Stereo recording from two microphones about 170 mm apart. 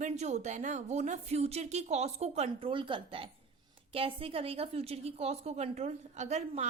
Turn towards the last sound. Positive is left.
turn(degrees=-40)  # may be behind; listen again after turning